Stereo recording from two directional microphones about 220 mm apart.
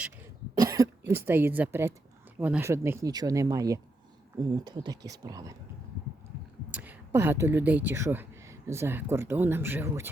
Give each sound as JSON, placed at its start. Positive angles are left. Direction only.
{"t": 0.5, "sound": "speech", "side_deg": -15}
{"t": 6.7, "sound": "speech", "side_deg": -10}